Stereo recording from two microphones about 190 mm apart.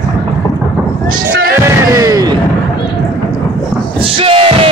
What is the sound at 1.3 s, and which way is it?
Music, 55° right (ahead or behind).